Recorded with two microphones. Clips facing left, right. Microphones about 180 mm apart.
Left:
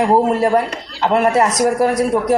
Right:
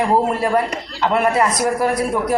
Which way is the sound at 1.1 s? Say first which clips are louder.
Left 3 dB; 40° left (ahead or behind).